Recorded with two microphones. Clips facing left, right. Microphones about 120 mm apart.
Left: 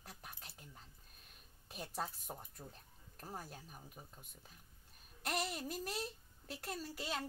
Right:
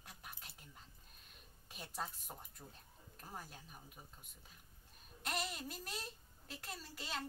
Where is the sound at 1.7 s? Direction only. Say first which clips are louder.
Left 4 dB; 40° left (ahead or behind).